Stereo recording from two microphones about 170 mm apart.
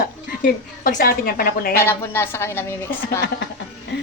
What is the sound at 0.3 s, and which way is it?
A woman's voice, 55° left (ahead or behind).